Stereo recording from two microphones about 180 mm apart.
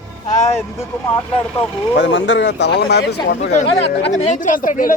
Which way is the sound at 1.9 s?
90° left.